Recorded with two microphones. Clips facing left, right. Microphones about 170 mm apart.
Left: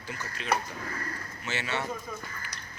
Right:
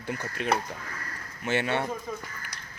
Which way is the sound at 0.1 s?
55° right (ahead or behind).